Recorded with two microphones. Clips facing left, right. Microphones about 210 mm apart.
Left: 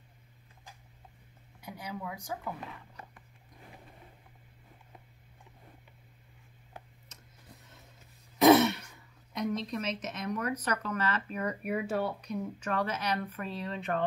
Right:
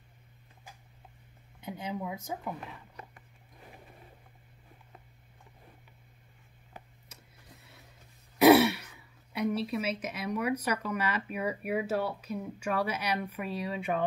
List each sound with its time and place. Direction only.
1.6 s a woman's voice: 25° right (ahead or behind)
7.1 s a sound: 10° right (ahead or behind)
8.4 s speech: 10° right (ahead or behind)